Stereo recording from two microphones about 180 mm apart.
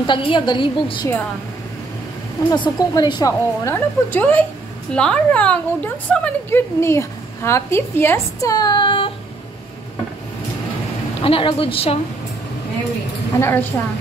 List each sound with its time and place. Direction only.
0.0 s a woman's voice: 25° left (ahead or behind)
2.5 s a woman's voice: 25° left (ahead or behind)
11.2 s a woman's voice: 30° left (ahead or behind)
13.4 s a woman's voice: 10° left (ahead or behind)